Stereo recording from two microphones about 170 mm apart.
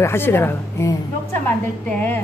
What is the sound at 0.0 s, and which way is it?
A woman's voice, 15° left (ahead or behind).